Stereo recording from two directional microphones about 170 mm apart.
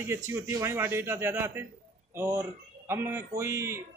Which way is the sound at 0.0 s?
15° right (ahead or behind).